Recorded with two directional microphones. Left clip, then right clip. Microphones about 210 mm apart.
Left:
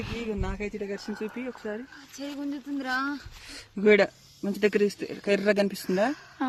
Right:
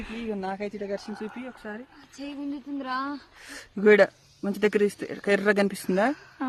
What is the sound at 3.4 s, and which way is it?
Speech, 30° right (ahead or behind).